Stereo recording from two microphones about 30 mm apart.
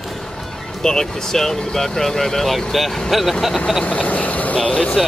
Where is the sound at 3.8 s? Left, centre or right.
Left.